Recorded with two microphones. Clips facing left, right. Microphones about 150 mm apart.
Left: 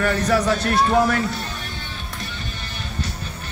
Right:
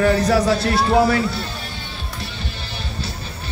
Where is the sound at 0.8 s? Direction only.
10° right (ahead or behind).